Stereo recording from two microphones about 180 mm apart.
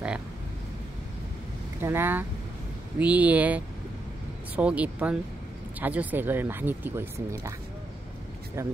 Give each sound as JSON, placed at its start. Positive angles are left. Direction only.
{"t": 1.8, "sound": "speech", "side_deg": -10}
{"t": 8.6, "sound": "speech", "side_deg": -15}